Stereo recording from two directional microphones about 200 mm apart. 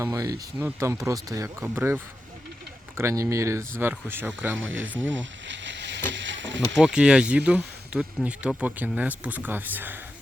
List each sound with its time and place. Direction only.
0.0 s speech: 15° right (ahead or behind)
3.0 s speech: 15° right (ahead or behind)
4.5 s speech: 75° right (ahead or behind)
5.0 s a sound: 65° right (ahead or behind)
6.8 s speech: 5° right (ahead or behind)